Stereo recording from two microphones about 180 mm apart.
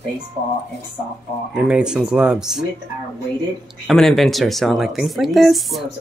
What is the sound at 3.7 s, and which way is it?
Speech, centre (ahead or behind).